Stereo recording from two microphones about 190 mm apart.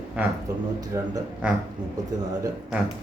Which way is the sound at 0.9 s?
15° right (ahead or behind).